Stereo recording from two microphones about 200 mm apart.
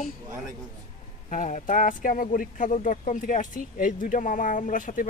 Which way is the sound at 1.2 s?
40° left (ahead or behind).